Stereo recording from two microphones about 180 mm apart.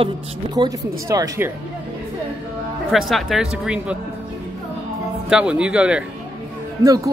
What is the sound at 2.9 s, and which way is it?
Speech, centre (ahead or behind).